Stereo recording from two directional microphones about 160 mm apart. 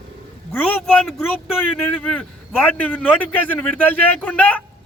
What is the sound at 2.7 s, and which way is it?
Speech, 10° left (ahead or behind).